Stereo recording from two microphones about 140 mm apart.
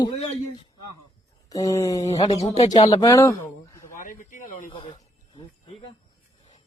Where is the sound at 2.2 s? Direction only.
45° left (ahead or behind).